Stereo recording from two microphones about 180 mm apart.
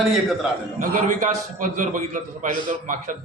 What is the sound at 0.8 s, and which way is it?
A man's voice, 45° right (ahead or behind).